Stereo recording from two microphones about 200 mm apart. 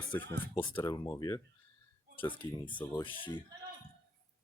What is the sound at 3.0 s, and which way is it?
Speech, 25° left (ahead or behind).